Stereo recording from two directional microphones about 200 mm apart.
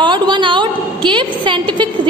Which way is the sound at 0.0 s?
25° right (ahead or behind).